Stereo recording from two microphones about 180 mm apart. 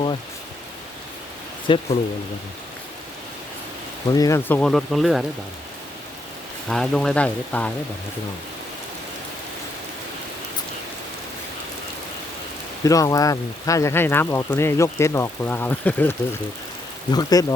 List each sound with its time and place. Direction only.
1.6 s speech: 30° left (ahead or behind)
4.1 s speech: 20° left (ahead or behind); by 5.2 s centre (ahead or behind)
6.7 s speech: 5° left (ahead or behind)
12.8 s speech: 20° left (ahead or behind)
17.1 s speech: 20° left (ahead or behind)